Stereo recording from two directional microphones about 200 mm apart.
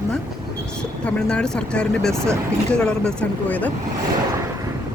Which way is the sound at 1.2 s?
5° left (ahead or behind).